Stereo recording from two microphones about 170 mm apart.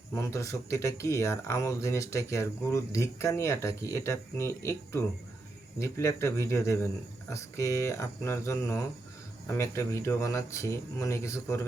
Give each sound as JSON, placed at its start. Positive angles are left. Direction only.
{"t": 0.1, "sound": "speech", "side_deg": 15}